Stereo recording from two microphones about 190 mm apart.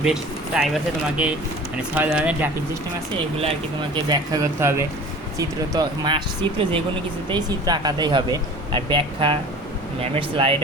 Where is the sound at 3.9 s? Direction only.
20° right (ahead or behind).